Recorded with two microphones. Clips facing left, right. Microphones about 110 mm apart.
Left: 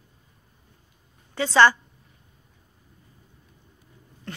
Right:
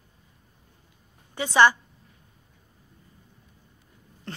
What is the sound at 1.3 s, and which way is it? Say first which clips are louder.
Speech: left 1 dB; 15° right (ahead or behind).